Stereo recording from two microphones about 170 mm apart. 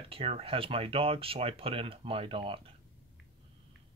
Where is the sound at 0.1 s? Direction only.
35° right (ahead or behind).